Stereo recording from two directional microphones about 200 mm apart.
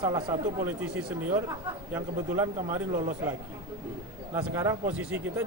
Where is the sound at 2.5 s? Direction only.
30° right (ahead or behind).